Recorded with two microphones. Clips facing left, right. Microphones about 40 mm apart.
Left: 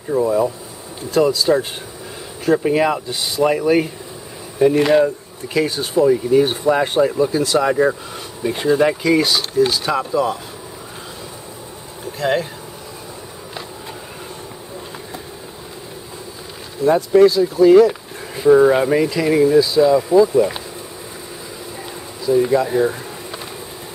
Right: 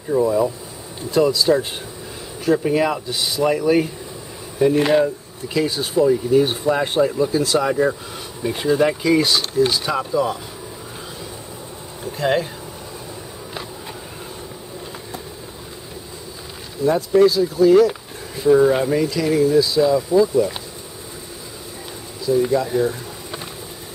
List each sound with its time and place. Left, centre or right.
0.2 s speech: centre
12.0 s insect: centre
16.8 s speech: centre
19.6 s speech: centre
22.2 s speech: centre